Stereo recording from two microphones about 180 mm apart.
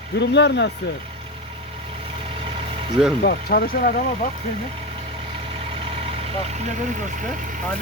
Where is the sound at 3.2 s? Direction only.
55° left (ahead or behind).